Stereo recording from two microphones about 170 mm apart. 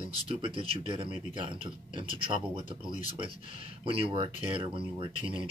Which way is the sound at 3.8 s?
35° right (ahead or behind).